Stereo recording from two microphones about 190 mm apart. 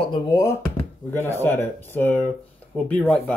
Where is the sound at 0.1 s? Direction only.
15° left (ahead or behind).